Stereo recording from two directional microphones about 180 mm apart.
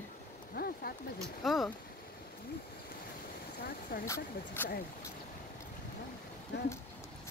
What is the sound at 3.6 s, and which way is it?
Speech, 55° left (ahead or behind).